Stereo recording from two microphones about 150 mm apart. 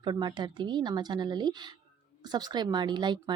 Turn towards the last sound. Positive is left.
turn(degrees=-30)  # may be behind; listen again after turning